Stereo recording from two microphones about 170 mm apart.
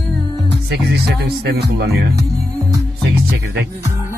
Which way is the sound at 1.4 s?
75° right (ahead or behind).